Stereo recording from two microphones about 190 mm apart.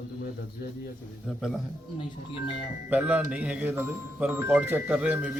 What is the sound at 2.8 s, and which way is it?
Speech, 10° right (ahead or behind).